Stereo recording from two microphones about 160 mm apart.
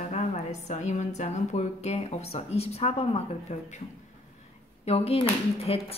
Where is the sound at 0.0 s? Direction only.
45° left (ahead or behind).